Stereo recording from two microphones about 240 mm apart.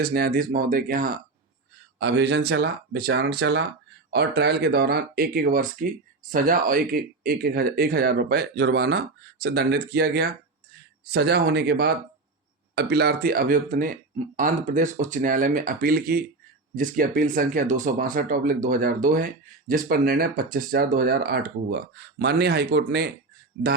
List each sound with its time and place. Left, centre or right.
0.0 s speech: right
2.0 s speech: right